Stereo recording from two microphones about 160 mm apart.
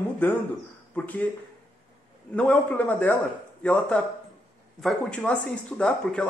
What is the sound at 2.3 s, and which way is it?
Speech, 10° left (ahead or behind).